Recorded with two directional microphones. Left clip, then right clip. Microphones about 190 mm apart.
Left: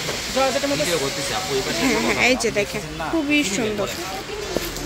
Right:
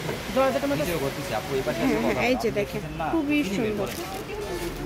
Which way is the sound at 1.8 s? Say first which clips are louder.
Left 6 dB; 5° left (ahead or behind).